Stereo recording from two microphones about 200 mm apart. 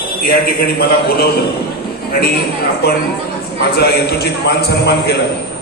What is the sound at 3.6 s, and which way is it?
A man's voice, 55° left (ahead or behind).